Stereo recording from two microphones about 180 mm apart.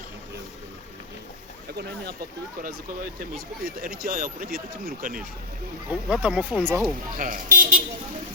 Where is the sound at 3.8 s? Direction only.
55° right (ahead or behind).